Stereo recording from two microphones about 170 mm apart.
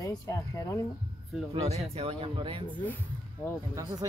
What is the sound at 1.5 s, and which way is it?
Speech, 35° right (ahead or behind).